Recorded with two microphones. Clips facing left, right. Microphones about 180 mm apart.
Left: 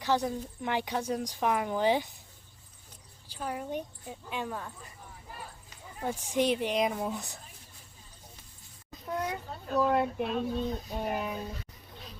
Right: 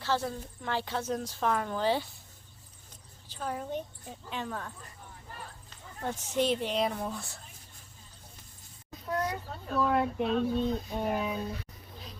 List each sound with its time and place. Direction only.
0.0 s speech: 15° left (ahead or behind)
3.2 s speech: 10° left (ahead or behind)
9.7 s speech: 10° left (ahead or behind)